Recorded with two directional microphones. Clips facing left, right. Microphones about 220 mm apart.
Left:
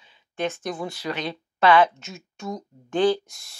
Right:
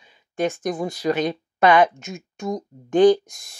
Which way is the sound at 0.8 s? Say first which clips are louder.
Right 8 dB; 40° right (ahead or behind).